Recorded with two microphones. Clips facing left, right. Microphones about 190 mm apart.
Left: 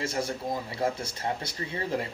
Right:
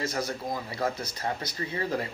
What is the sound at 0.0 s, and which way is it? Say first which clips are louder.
Speech: even; 30° left (ahead or behind).